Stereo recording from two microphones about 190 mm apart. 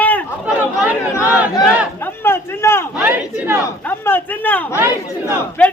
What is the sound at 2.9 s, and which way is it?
Speech, 5° right (ahead or behind).